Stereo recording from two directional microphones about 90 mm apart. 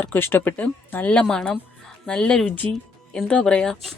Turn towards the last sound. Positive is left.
turn(degrees=5)  # may be behind; listen again after turning